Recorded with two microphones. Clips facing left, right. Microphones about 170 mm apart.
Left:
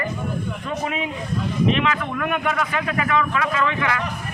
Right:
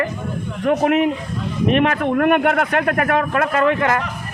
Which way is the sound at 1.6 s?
50° right (ahead or behind).